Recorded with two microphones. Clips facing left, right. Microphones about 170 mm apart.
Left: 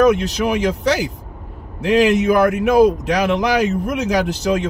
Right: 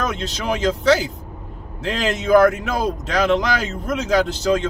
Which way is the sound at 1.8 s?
15° left (ahead or behind).